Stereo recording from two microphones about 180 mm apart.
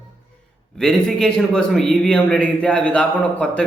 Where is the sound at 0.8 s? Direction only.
5° left (ahead or behind).